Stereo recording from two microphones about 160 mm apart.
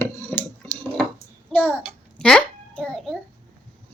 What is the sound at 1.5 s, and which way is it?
A child's voice, 10° left (ahead or behind).